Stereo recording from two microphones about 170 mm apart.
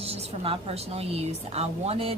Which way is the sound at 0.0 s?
35° right (ahead or behind).